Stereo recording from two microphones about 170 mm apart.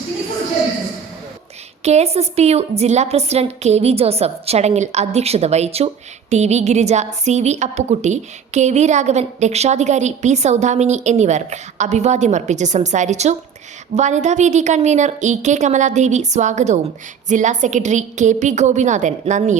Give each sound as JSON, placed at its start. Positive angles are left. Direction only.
{"t": 1.8, "sound": "a woman's voice", "side_deg": -40}